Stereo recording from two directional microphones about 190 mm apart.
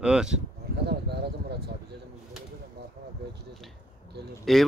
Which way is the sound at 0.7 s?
60° right (ahead or behind).